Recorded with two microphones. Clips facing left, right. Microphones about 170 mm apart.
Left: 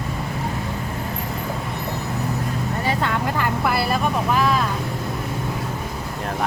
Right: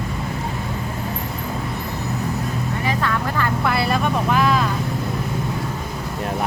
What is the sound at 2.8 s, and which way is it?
Vehicle, 25° left (ahead or behind).